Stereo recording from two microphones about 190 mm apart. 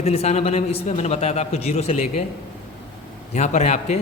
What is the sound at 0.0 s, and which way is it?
A man's voice, 35° left (ahead or behind).